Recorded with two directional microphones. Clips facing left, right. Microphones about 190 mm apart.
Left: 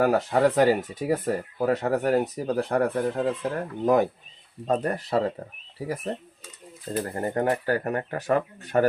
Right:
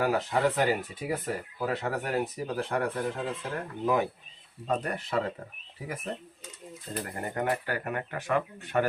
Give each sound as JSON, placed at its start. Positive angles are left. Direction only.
{"t": 0.0, "sound": "speech", "side_deg": 45}
{"t": 7.0, "sound": "speech", "side_deg": 35}